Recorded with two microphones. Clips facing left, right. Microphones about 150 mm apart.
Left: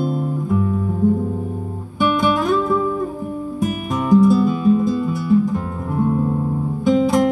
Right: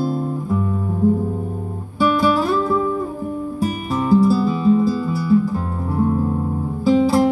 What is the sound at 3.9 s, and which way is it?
Music, 5° right (ahead or behind).